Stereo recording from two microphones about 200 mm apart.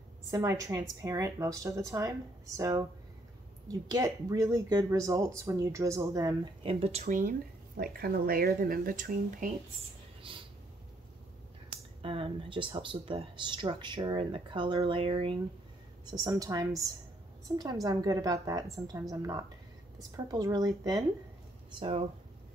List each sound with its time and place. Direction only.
0.3 s a woman's voice: 15° right (ahead or behind)
6.6 s speech: 30° right (ahead or behind)
10.3 s speech: 25° right (ahead or behind)
12.0 s a woman's voice: 25° right (ahead or behind)
21.7 s speech: 30° right (ahead or behind)